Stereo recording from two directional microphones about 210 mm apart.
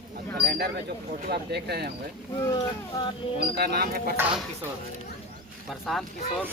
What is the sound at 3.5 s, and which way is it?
Speech, 50° right (ahead or behind).